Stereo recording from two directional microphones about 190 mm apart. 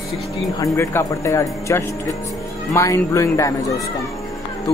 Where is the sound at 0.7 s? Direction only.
15° left (ahead or behind).